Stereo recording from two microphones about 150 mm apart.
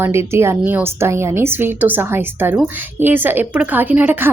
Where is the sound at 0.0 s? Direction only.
15° right (ahead or behind).